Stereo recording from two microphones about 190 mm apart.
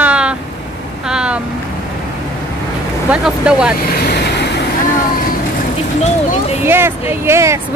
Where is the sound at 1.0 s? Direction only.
5° right (ahead or behind).